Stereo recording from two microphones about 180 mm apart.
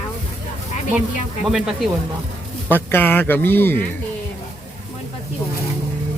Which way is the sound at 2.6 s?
10° left (ahead or behind).